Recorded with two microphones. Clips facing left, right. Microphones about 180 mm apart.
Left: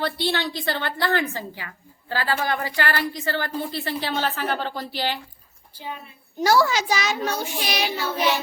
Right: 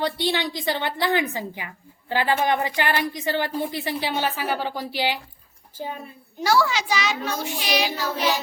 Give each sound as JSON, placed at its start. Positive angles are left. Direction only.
{"t": 0.0, "sound": "a woman's voice", "side_deg": -15}
{"t": 6.4, "sound": "a child's voice", "side_deg": 45}
{"t": 7.9, "sound": "child singing", "side_deg": -40}